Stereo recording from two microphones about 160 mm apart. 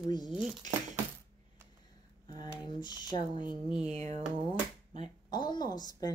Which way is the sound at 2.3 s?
25° left (ahead or behind).